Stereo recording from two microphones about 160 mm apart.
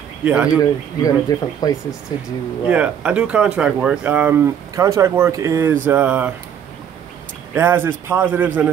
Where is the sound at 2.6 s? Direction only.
5° right (ahead or behind).